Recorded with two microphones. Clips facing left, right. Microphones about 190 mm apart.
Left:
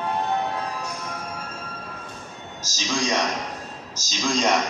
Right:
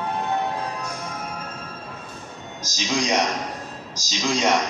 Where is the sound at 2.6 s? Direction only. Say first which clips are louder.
Right 2 dB; 15° right (ahead or behind).